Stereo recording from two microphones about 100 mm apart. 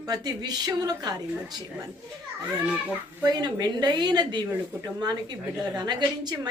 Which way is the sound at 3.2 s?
45° right (ahead or behind).